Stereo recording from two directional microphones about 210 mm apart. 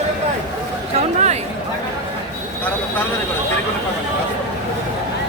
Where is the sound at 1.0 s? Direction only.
30° right (ahead or behind).